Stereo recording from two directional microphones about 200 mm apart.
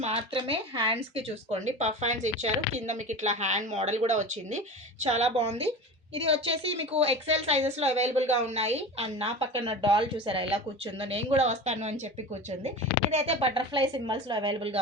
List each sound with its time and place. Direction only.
0.0 s speech: 25° right (ahead or behind)
13.1 s speech: 30° right (ahead or behind)